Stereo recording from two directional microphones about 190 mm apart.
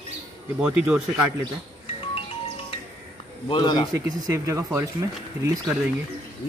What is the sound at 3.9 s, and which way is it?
Speech, 15° right (ahead or behind).